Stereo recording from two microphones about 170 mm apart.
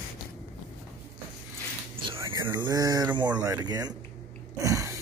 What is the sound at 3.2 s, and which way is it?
Speech, 25° right (ahead or behind).